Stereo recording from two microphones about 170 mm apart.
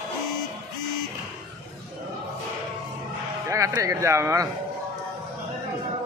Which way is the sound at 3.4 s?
20° right (ahead or behind).